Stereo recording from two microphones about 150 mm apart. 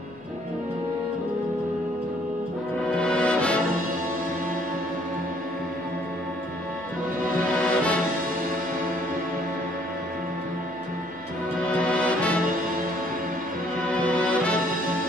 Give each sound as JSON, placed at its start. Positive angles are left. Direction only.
{"t": 2.9, "sound": "music", "side_deg": 5}
{"t": 7.5, "sound": "music", "side_deg": 5}
{"t": 11.8, "sound": "music", "side_deg": 10}
{"t": 14.0, "sound": "music", "side_deg": 10}